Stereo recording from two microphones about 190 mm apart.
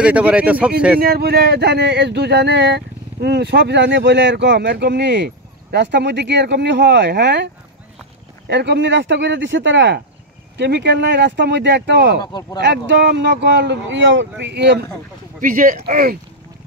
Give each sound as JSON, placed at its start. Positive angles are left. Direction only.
{"t": 0.0, "sound": "speech", "side_deg": -5}
{"t": 1.0, "sound": "speech", "side_deg": -55}
{"t": 8.5, "sound": "speech", "side_deg": -65}
{"t": 12.3, "sound": "speech", "side_deg": 20}
{"t": 12.5, "sound": "speech", "side_deg": -65}
{"t": 14.4, "sound": "speech", "side_deg": -65}
{"t": 15.4, "sound": "speech", "side_deg": -45}